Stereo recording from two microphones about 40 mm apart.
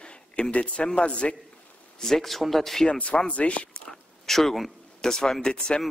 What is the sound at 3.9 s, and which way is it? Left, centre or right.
Speech, centre.